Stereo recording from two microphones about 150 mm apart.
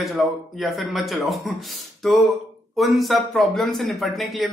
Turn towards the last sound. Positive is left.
turn(degrees=0)  # may be behind; listen again after turning